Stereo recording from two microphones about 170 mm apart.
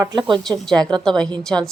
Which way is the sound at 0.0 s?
25° right (ahead or behind).